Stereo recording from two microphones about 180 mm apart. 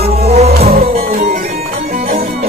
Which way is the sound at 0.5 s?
55° right (ahead or behind).